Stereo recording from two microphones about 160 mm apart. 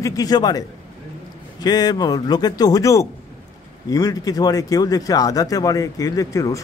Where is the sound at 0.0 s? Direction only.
20° left (ahead or behind).